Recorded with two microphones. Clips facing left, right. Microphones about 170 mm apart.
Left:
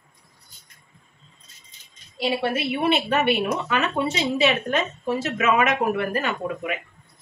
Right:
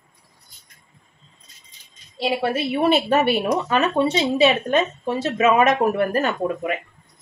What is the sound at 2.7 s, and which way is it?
Speech, 40° right (ahead or behind).